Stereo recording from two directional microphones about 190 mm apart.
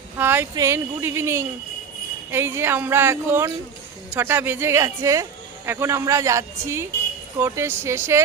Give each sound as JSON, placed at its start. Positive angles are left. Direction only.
{"t": 0.2, "sound": "speech", "side_deg": -10}